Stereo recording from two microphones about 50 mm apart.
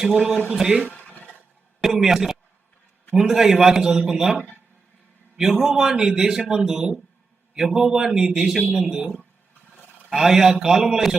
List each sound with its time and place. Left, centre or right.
0.0 s a man's voice: centre
0.9 s a sound: left
1.8 s a man's voice: centre
5.4 s a man's voice: centre
10.1 s a man's voice: centre